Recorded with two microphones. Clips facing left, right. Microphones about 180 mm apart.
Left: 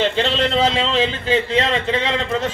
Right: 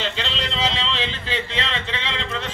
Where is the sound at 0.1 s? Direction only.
50° left (ahead or behind).